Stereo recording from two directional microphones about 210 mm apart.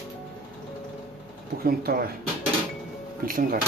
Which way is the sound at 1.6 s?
45° right (ahead or behind).